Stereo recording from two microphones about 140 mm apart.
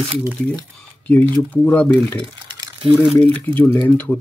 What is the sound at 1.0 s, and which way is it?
Speech, 15° left (ahead or behind).